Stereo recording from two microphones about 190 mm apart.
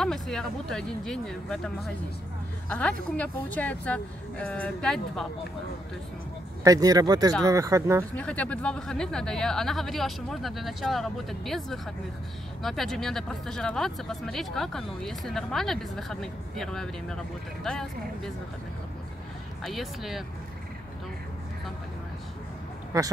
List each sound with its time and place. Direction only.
0.0 s speech: 5° left (ahead or behind)
6.6 s speech: 20° right (ahead or behind)
8.2 s speech: 5° left (ahead or behind)
19.6 s speech: centre (ahead or behind)